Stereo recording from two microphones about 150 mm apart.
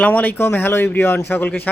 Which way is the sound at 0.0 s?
10° left (ahead or behind).